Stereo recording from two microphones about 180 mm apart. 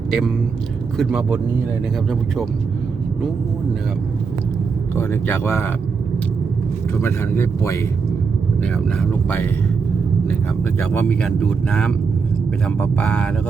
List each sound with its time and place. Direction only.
0.1 s speech: centre (ahead or behind)
4.9 s speech: 10° left (ahead or behind)
7.0 s speech: 15° left (ahead or behind)
8.6 s speech: 5° left (ahead or behind)
10.9 s speech: 5° left (ahead or behind)